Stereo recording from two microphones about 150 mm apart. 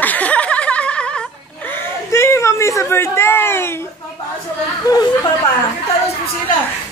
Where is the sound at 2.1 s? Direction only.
20° left (ahead or behind).